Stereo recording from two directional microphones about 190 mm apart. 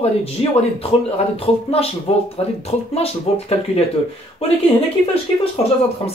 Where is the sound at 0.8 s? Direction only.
30° left (ahead or behind).